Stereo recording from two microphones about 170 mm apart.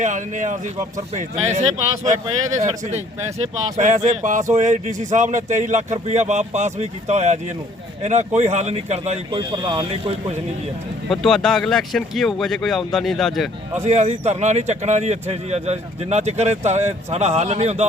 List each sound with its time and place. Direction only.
0.0 s a man's voice: 45° right (ahead or behind)
9.4 s speech: 25° right (ahead or behind)
9.9 s speech: 35° right (ahead or behind)
11.1 s speech: centre (ahead or behind)
13.8 s speech: 40° right (ahead or behind)